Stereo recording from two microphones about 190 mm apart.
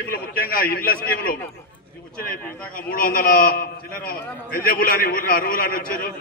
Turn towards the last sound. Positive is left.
turn(degrees=50)  # may be behind; listen again after turning